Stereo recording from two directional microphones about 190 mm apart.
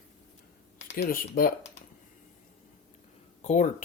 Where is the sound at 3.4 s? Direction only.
40° left (ahead or behind).